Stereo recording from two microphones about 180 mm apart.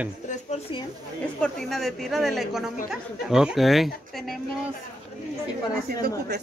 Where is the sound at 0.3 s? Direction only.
40° left (ahead or behind).